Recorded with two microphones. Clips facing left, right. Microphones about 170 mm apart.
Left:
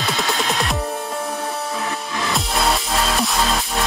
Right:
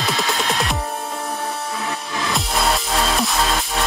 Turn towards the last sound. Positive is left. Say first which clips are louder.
# even
turn(degrees=0)  # may be behind; listen again after turning